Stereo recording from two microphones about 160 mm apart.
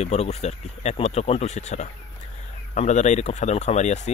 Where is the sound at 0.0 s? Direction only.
40° left (ahead or behind).